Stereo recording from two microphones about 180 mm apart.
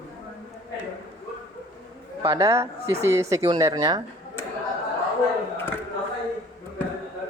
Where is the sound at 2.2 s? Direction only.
20° right (ahead or behind).